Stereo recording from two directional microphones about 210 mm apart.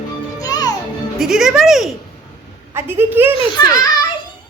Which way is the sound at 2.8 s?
10° right (ahead or behind).